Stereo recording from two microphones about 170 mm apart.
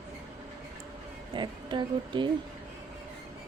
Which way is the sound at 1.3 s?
25° right (ahead or behind).